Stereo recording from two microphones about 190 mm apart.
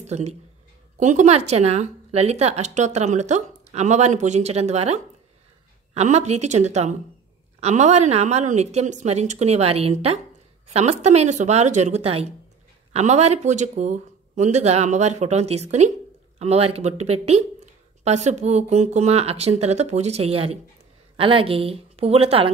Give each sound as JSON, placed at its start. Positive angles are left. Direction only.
{"t": 0.0, "sound": "a woman's voice", "side_deg": -35}